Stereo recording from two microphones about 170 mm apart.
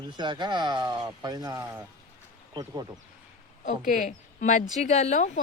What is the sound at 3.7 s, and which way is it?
Speech, 50° left (ahead or behind).